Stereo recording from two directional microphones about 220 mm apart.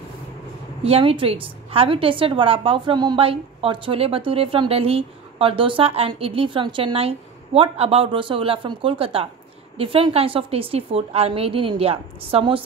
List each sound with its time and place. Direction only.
0.8 s a woman's voice: 25° right (ahead or behind)